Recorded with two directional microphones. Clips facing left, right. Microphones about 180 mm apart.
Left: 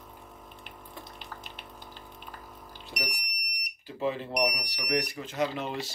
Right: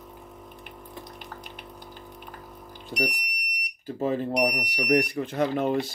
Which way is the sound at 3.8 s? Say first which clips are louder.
Right 5 dB; 45° right (ahead or behind).